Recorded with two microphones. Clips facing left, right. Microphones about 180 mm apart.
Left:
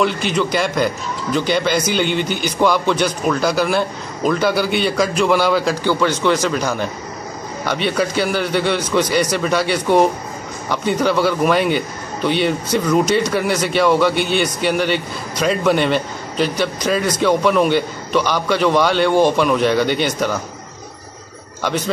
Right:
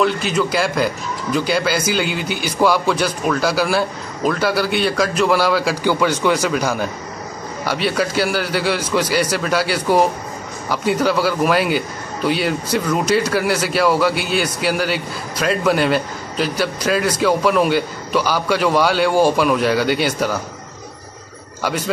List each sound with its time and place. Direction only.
0.0 s a man's voice: centre (ahead or behind)